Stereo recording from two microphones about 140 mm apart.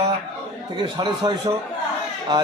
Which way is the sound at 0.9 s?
30° right (ahead or behind).